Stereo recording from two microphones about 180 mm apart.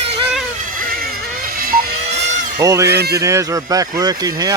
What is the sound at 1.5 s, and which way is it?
Vehicle, 55° right (ahead or behind).